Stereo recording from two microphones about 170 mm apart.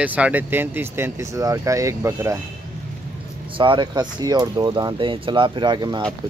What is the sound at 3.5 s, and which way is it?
Speech, 30° right (ahead or behind).